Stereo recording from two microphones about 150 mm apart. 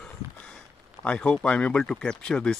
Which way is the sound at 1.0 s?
5° left (ahead or behind).